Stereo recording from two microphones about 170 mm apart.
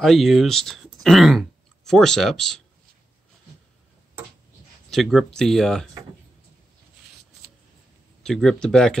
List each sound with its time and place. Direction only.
0.0 s speech: centre (ahead or behind)
4.9 s speech: centre (ahead or behind)
8.2 s speech: 5° left (ahead or behind)